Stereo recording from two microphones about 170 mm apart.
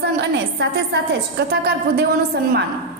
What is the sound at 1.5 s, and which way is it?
A woman's voice, 70° right (ahead or behind).